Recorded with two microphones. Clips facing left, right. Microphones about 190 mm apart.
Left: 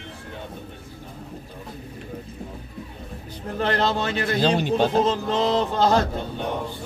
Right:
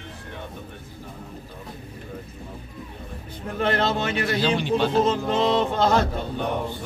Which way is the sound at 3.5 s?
35° left (ahead or behind).